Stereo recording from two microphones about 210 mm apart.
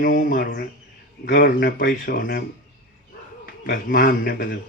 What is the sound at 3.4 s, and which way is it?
A man's voice, 45° left (ahead or behind).